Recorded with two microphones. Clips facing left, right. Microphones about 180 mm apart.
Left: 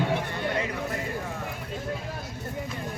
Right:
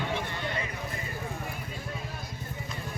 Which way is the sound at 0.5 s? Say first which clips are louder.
Left 6 dB; 75° left (ahead or behind).